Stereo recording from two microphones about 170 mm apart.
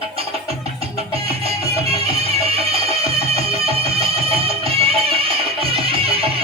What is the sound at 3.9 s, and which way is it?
Music, 35° right (ahead or behind).